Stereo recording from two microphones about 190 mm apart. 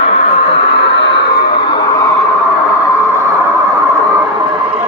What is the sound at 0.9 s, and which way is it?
Music, 65° left (ahead or behind).